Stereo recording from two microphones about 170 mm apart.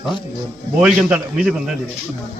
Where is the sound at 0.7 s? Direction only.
5° right (ahead or behind).